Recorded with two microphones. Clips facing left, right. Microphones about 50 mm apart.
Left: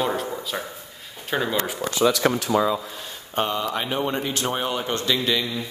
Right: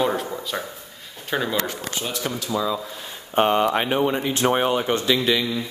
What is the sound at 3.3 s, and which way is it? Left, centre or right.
Speech, right.